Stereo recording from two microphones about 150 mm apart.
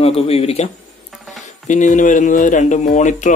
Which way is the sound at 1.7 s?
55° left (ahead or behind).